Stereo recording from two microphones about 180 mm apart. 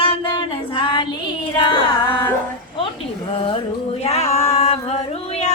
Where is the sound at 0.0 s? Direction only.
30° left (ahead or behind).